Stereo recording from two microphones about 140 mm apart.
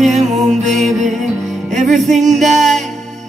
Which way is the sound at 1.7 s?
60° right (ahead or behind).